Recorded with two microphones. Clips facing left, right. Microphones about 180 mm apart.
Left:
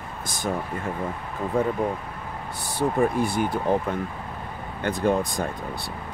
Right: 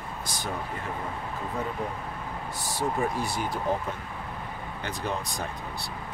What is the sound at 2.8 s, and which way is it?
Speech, 55° left (ahead or behind).